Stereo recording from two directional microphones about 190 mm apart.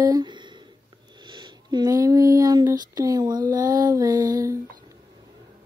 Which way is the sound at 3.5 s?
20° right (ahead or behind).